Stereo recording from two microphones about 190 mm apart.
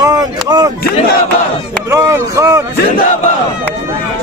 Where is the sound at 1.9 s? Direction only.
15° right (ahead or behind).